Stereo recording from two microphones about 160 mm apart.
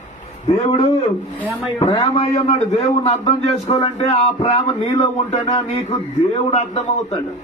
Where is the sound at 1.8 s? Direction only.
35° left (ahead or behind).